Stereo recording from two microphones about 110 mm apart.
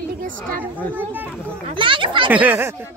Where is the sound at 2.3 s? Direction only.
15° right (ahead or behind).